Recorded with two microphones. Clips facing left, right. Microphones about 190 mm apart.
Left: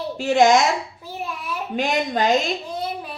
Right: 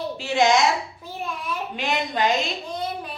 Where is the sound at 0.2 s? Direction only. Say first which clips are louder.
Left 5 dB; 50° left (ahead or behind).